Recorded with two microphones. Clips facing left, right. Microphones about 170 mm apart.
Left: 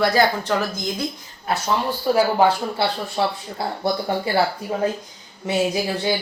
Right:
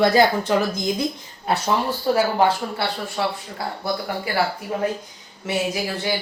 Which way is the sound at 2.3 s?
15° left (ahead or behind).